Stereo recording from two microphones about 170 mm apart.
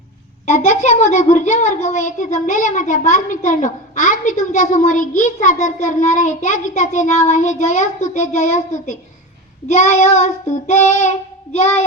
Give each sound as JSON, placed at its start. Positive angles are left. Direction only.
{"t": 0.4, "sound": "a child's voice", "side_deg": 40}